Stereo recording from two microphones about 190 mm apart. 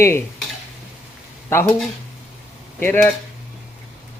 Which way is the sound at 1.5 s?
10° left (ahead or behind).